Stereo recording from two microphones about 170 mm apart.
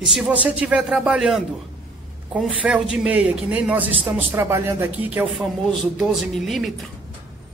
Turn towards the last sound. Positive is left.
turn(degrees=0)  # may be behind; listen again after turning